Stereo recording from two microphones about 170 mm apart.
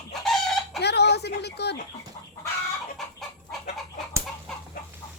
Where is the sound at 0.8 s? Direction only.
75° left (ahead or behind).